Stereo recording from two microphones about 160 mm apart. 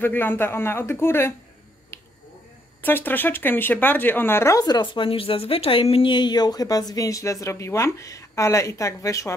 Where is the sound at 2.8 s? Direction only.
10° left (ahead or behind).